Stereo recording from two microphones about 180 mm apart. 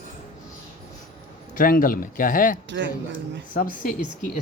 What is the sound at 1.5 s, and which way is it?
Speech, 50° left (ahead or behind).